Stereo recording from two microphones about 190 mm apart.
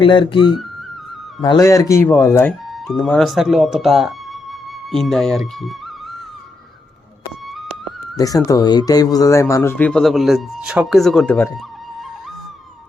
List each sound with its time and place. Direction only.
0.0 s speech: 25° left (ahead or behind)
1.4 s speech: 20° left (ahead or behind)
2.8 s speech: centre (ahead or behind)
8.1 s speech: 20° left (ahead or behind)